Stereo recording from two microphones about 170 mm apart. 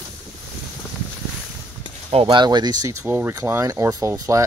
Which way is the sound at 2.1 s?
30° right (ahead or behind).